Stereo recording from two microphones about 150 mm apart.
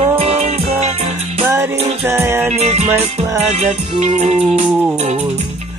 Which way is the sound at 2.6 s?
45° right (ahead or behind).